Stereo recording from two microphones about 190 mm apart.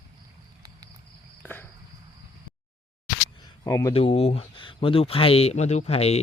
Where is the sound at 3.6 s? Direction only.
15° left (ahead or behind).